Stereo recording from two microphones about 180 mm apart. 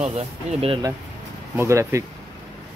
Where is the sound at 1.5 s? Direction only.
15° right (ahead or behind).